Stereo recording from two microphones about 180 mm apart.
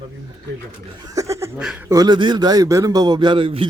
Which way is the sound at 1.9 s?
20° right (ahead or behind).